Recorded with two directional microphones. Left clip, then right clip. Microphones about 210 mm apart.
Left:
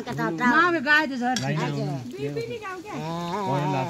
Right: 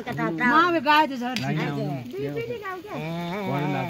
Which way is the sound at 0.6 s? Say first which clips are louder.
Right 2 dB; 50° right (ahead or behind).